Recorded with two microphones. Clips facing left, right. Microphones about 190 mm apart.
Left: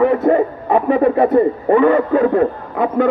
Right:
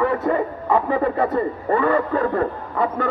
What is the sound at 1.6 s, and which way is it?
Speech, 20° left (ahead or behind).